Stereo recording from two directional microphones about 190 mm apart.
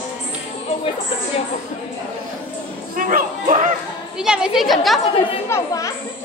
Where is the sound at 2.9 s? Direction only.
45° right (ahead or behind).